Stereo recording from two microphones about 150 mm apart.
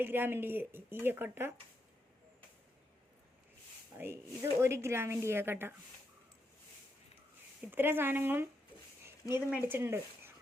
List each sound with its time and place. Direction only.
0.0 s speech: 15° right (ahead or behind)
3.9 s speech: 15° right (ahead or behind)
7.6 s speech: 15° right (ahead or behind)